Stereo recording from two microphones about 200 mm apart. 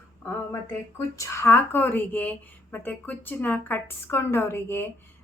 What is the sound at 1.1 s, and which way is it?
A woman's voice, 15° left (ahead or behind).